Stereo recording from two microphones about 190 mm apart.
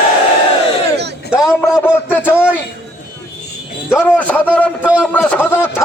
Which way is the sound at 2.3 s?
5° right (ahead or behind).